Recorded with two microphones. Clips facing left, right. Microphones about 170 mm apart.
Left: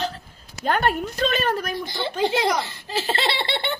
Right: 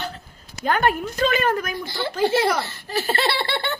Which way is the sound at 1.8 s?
20° left (ahead or behind).